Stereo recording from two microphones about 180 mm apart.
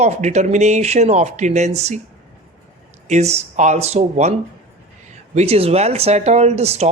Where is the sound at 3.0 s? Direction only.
40° right (ahead or behind).